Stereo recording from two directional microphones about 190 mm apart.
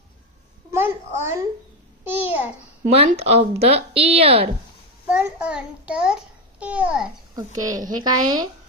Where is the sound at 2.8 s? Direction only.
35° right (ahead or behind).